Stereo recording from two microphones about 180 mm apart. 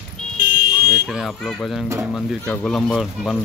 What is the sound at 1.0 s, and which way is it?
Speech, centre (ahead or behind).